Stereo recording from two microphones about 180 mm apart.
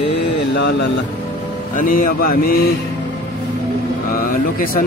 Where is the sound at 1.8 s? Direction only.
50° left (ahead or behind).